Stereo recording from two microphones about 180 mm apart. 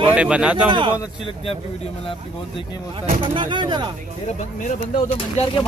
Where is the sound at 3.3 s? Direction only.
25° right (ahead or behind).